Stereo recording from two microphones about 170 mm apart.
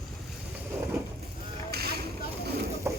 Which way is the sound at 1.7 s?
70° right (ahead or behind).